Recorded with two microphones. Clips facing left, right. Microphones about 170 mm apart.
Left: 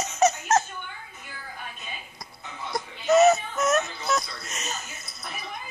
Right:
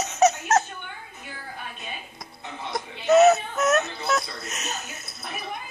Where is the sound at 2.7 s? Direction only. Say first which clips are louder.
Right 2 dB; centre (ahead or behind).